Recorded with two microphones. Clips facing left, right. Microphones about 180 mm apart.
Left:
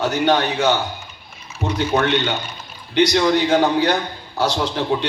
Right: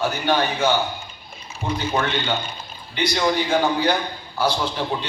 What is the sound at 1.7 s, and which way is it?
A man's voice, 75° left (ahead or behind).